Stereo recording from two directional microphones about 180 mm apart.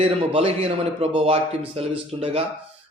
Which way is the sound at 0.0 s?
35° right (ahead or behind).